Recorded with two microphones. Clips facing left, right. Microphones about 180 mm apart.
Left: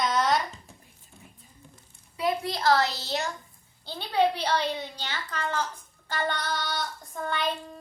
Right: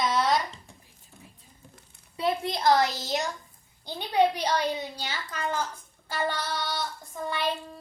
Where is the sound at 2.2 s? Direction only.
25° right (ahead or behind).